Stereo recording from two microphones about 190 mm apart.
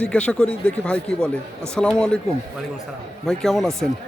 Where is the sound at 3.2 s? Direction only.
Centre (ahead or behind).